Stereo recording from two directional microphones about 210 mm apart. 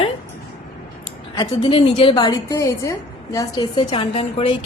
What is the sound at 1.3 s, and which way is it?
A woman's voice, 20° left (ahead or behind).